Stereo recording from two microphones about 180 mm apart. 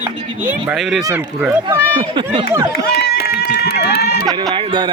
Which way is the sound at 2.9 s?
60° left (ahead or behind).